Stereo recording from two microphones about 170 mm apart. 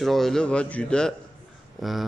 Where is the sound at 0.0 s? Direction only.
Centre (ahead or behind).